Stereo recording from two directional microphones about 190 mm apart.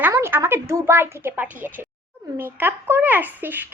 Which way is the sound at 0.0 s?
10° right (ahead or behind).